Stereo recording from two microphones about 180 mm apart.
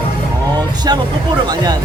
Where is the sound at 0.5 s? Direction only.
25° right (ahead or behind).